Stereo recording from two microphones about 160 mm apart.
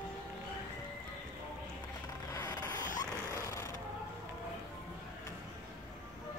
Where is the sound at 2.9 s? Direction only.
15° left (ahead or behind).